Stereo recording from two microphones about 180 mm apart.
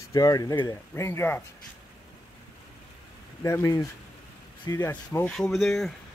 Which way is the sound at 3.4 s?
15° left (ahead or behind).